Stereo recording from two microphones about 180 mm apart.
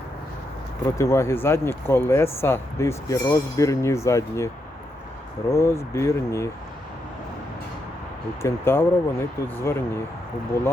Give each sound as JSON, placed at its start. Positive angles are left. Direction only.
{"t": 0.9, "sound": "speech", "side_deg": 15}
{"t": 5.5, "sound": "speech", "side_deg": 15}
{"t": 8.4, "sound": "speech", "side_deg": 15}